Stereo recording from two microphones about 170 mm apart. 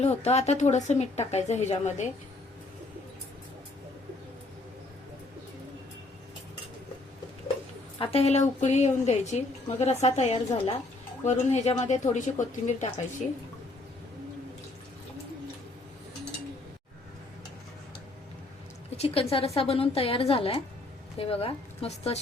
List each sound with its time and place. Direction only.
0.0 s a woman's voice: 40° left (ahead or behind)
7.9 s a woman's voice: 35° left (ahead or behind)
18.9 s a woman's voice: 35° left (ahead or behind)